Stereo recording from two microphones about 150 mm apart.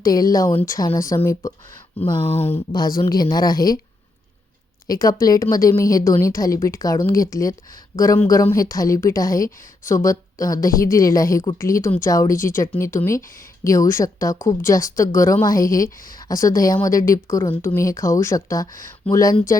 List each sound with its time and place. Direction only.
0.0 s a woman's voice: 25° left (ahead or behind)
2.7 s a woman's voice: 25° left (ahead or behind)
4.9 s a woman's voice: 25° left (ahead or behind)
16.0 s speech: 70° left (ahead or behind)
16.3 s a woman's voice: 20° left (ahead or behind)